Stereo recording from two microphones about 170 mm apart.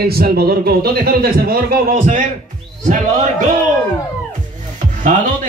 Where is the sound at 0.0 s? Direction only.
65° right (ahead or behind); by 3.3 s 45° right (ahead or behind).